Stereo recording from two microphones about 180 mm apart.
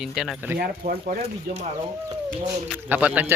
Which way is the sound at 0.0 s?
Centre (ahead or behind).